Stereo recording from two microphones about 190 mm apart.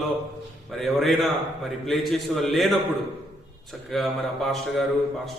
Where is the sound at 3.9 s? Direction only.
Centre (ahead or behind).